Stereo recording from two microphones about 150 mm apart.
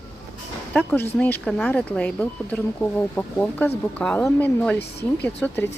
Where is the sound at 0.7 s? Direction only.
10° left (ahead or behind).